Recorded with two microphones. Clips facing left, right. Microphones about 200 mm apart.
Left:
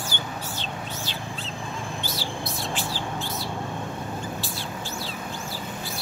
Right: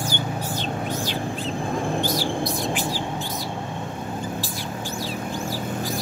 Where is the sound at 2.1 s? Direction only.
15° right (ahead or behind).